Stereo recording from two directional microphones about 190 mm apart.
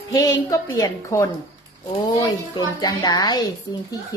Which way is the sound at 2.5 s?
20° left (ahead or behind).